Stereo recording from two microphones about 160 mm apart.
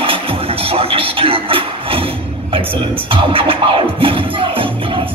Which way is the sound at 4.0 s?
35° right (ahead or behind).